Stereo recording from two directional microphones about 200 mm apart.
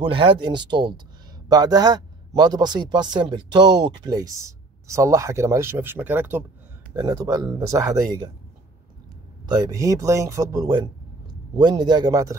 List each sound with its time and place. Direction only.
0.0 s speech: 25° right (ahead or behind)
9.5 s speech: 20° right (ahead or behind)